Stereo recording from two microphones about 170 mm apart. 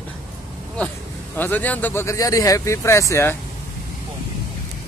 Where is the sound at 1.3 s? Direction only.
10° left (ahead or behind).